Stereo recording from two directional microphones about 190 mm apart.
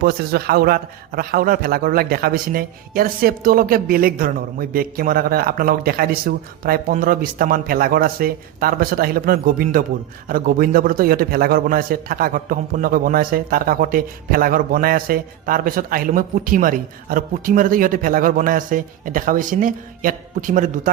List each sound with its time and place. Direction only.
0.0 s a man's voice: 55° right (ahead or behind)